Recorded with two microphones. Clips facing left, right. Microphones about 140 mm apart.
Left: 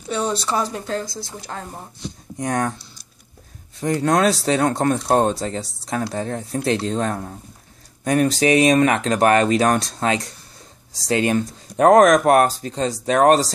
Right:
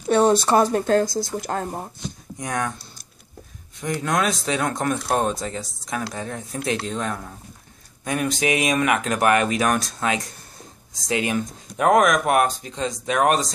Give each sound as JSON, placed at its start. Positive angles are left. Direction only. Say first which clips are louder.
{"t": 0.1, "sound": "speech", "louder": "right 6 dB", "side_deg": -50}
{"t": 2.3, "sound": "speech", "louder": "left 5 dB", "side_deg": 35}
{"t": 3.8, "sound": "speech", "louder": "left 5 dB", "side_deg": 35}